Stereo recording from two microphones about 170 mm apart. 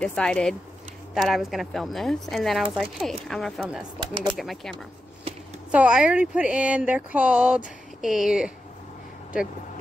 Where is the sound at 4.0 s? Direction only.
25° right (ahead or behind).